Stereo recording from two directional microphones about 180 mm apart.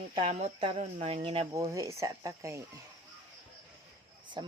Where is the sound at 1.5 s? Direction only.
20° right (ahead or behind).